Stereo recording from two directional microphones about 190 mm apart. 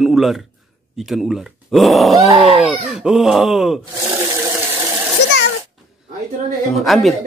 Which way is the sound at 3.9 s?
15° right (ahead or behind).